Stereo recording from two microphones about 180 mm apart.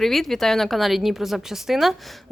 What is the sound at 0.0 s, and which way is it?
A woman's voice, centre (ahead or behind).